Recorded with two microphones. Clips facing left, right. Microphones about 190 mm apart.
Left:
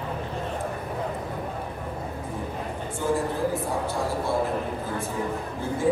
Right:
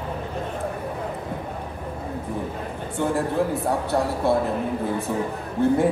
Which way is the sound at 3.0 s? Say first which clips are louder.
Right 3 dB; 65° right (ahead or behind).